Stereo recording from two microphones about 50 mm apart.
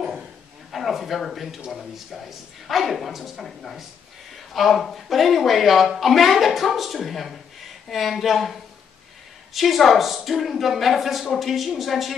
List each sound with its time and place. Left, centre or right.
0.7 s speech: centre